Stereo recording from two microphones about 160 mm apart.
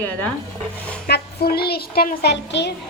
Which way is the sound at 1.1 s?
75° left (ahead or behind).